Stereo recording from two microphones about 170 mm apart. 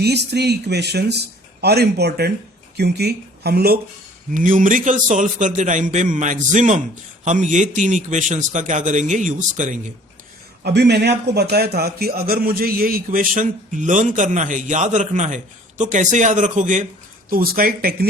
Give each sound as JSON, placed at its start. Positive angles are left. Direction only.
{"t": 0.0, "sound": "speech", "side_deg": -75}
{"t": 4.4, "sound": "a man's voice", "side_deg": -50}
{"t": 10.6, "sound": "a man's voice", "side_deg": -75}
{"t": 17.2, "sound": "a man's voice", "side_deg": -60}